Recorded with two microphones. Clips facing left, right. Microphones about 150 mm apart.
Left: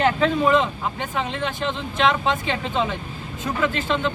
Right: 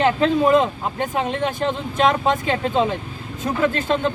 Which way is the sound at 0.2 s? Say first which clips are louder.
Right 3 dB; 40° right (ahead or behind).